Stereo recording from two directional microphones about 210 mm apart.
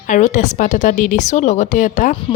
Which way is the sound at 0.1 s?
35° left (ahead or behind).